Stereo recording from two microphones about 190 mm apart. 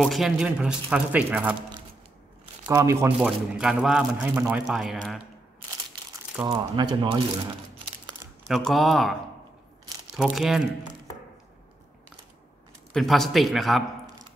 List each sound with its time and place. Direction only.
0.0 s a man's voice: centre (ahead or behind)
2.6 s speech: 15° right (ahead or behind)
3.2 s a man's voice: centre (ahead or behind)
6.4 s speech: 25° right (ahead or behind)
8.5 s a man's voice: centre (ahead or behind)
10.1 s a man's voice: 5° right (ahead or behind)
12.9 s a man's voice: centre (ahead or behind)